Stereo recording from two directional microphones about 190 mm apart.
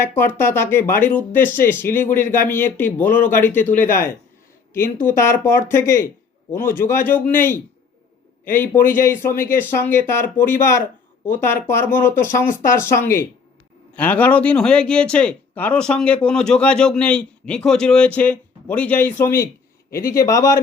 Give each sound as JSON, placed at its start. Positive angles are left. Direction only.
{"t": 0.0, "sound": "speech", "side_deg": 10}